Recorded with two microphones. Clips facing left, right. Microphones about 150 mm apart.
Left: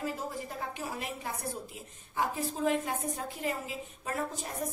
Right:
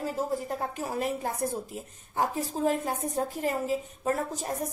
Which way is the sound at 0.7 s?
45° right (ahead or behind).